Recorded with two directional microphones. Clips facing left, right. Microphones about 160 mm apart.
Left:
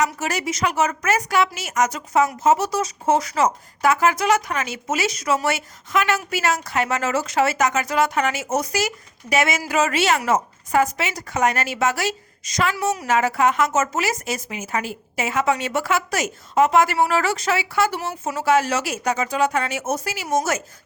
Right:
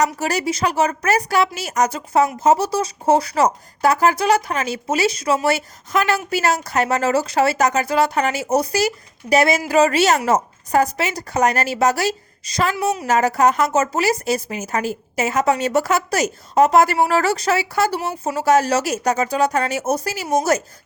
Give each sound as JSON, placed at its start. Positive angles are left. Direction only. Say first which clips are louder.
{"t": 0.0, "sound": "a woman's voice", "louder": "right 3 dB", "side_deg": -35}
{"t": 13.1, "sound": "a woman's voice", "louder": "right 3 dB", "side_deg": -40}